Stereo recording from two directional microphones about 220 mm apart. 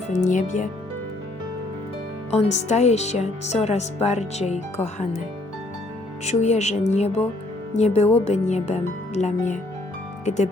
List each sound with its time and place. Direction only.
0.1 s speech: 35° left (ahead or behind)
2.3 s speech: 30° left (ahead or behind)
6.2 s speech: 30° left (ahead or behind)